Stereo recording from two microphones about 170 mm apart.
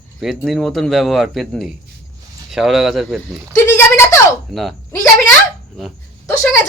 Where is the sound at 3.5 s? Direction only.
15° left (ahead or behind).